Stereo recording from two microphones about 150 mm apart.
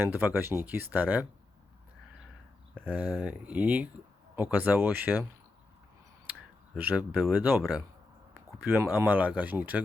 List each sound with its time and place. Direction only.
0.0 s speech: 10° right (ahead or behind)
2.7 s speech: 10° right (ahead or behind)
6.3 s clicking: 10° right (ahead or behind)
6.7 s speech: 10° right (ahead or behind)